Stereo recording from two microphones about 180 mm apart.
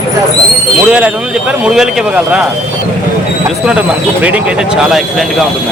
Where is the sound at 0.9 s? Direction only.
5° right (ahead or behind).